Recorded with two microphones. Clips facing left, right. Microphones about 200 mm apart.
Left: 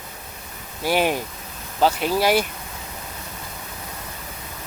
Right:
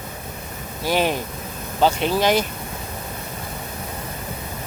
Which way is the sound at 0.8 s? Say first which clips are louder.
Even; 10° left (ahead or behind).